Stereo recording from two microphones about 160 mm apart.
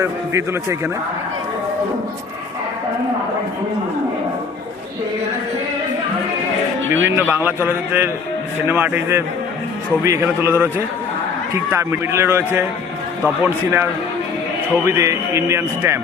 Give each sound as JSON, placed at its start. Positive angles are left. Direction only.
{"t": 0.0, "sound": "a man's voice", "side_deg": -20}
{"t": 6.9, "sound": "a man's voice", "side_deg": -10}
{"t": 14.8, "sound": "speech", "side_deg": -20}